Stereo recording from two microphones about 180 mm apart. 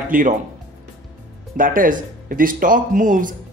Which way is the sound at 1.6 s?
50° right (ahead or behind).